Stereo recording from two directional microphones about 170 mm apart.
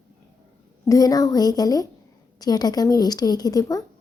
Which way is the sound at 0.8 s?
20° left (ahead or behind).